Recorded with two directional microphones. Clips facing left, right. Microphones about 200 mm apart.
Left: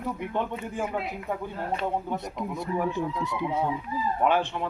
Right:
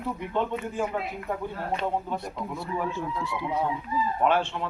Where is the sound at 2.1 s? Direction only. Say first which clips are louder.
Left 1 dB; 20° left (ahead or behind).